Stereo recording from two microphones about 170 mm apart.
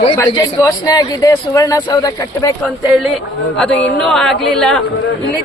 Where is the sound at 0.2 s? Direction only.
20° left (ahead or behind).